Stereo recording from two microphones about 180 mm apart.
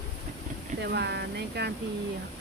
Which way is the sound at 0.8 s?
65° right (ahead or behind).